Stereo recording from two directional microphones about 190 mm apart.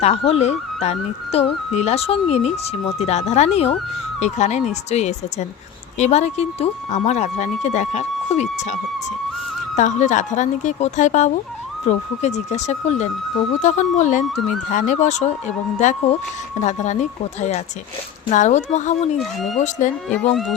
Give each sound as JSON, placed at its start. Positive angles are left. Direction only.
{"t": 0.0, "sound": "speech", "side_deg": 35}